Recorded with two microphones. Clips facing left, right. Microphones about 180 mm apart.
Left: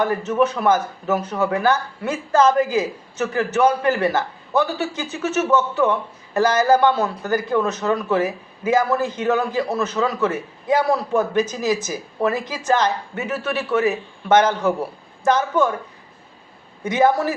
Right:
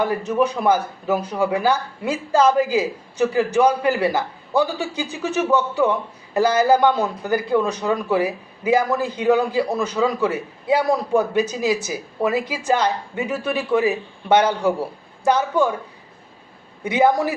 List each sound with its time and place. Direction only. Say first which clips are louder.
0.0 s speech: left 1 dB; 15° right (ahead or behind)
16.8 s speech: even; 15° right (ahead or behind)